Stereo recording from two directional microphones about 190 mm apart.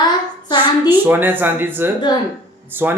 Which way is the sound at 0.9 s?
10° right (ahead or behind).